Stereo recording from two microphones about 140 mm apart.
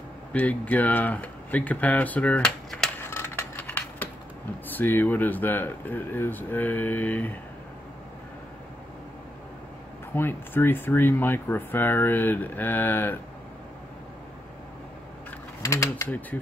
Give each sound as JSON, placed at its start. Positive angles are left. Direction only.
{"t": 0.3, "sound": "speech", "side_deg": 10}
{"t": 3.0, "sound": "scissors", "side_deg": 20}
{"t": 4.6, "sound": "speech", "side_deg": 15}
{"t": 10.1, "sound": "speech", "side_deg": 15}
{"t": 15.6, "sound": "speech", "side_deg": 20}